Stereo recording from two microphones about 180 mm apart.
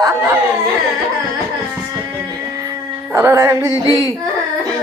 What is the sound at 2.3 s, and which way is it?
Music, 20° right (ahead or behind).